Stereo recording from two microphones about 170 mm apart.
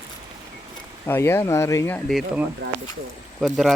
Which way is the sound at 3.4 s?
Centre (ahead or behind).